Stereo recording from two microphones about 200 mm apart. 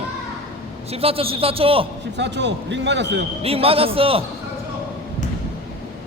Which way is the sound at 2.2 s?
60° right (ahead or behind).